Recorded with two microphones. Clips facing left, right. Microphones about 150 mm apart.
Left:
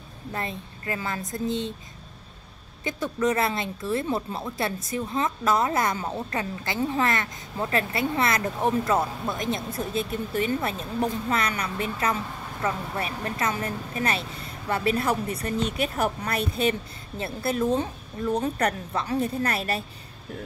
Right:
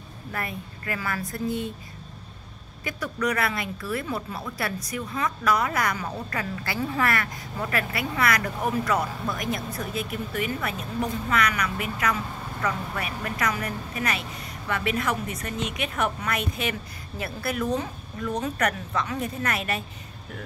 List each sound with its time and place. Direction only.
0.3 s speech: 25° left (ahead or behind)
2.8 s a woman's voice: 25° left (ahead or behind)